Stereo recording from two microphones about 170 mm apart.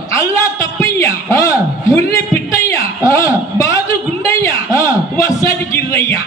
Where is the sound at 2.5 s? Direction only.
15° left (ahead or behind).